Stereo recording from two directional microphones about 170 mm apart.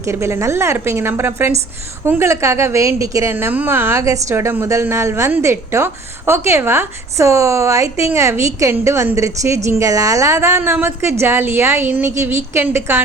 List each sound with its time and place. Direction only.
0.0 s a woman's voice: 15° right (ahead or behind)